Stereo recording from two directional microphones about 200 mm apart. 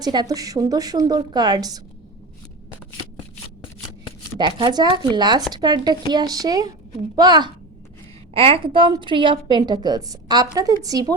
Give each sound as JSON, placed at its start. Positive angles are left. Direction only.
{"t": 0.0, "sound": "a woman's voice", "side_deg": -20}
{"t": 4.4, "sound": "a woman's voice", "side_deg": -20}